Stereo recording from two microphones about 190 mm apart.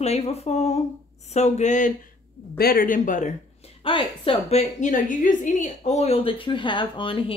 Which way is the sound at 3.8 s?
25° left (ahead or behind).